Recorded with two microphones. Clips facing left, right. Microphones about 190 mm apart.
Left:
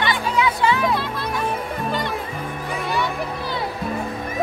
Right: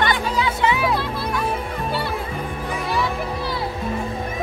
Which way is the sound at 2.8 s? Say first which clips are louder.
Even; centre (ahead or behind).